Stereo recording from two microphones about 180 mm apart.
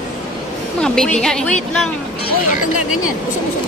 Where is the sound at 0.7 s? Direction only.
5° left (ahead or behind).